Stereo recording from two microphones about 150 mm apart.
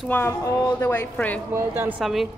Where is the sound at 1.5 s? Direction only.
15° right (ahead or behind).